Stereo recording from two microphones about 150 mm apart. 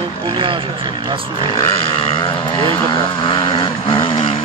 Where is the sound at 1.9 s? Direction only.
35° left (ahead or behind).